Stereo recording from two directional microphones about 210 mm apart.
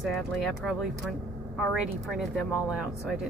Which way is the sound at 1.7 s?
Centre (ahead or behind).